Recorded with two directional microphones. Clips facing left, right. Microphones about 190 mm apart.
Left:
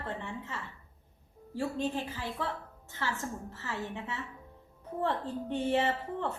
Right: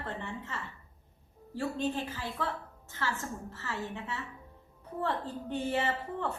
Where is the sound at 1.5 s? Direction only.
10° left (ahead or behind).